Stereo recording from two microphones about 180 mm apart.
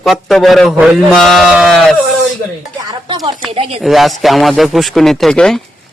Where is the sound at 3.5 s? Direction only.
35° right (ahead or behind).